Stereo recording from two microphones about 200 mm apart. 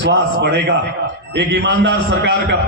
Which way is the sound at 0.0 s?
60° right (ahead or behind).